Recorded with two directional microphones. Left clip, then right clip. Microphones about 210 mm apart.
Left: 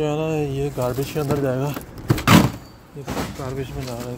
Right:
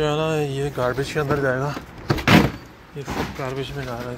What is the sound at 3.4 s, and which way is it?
Speech, 10° left (ahead or behind).